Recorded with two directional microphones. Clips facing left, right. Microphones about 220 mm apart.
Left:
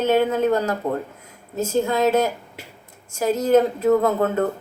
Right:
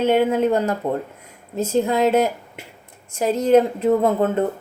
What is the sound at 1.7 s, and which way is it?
A woman's voice, 30° right (ahead or behind).